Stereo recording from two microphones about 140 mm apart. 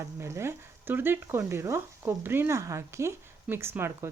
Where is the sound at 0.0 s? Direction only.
20° right (ahead or behind).